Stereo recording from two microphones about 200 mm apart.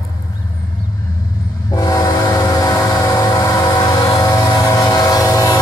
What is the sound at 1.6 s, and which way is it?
Train, 20° left (ahead or behind).